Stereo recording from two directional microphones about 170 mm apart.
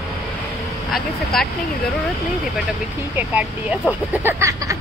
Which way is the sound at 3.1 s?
10° right (ahead or behind).